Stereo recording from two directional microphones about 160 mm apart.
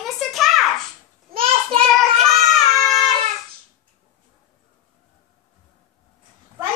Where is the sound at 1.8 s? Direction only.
Centre (ahead or behind).